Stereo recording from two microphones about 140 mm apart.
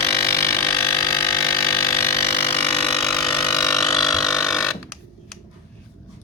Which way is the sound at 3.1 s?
5° left (ahead or behind).